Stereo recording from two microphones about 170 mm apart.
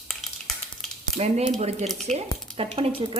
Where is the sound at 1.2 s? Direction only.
40° right (ahead or behind).